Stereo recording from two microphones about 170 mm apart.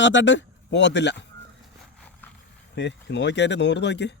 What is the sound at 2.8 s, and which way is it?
A man's voice, 90° left.